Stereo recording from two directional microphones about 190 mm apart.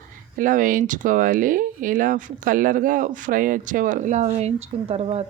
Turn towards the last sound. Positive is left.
turn(degrees=-30)  # may be behind; listen again after turning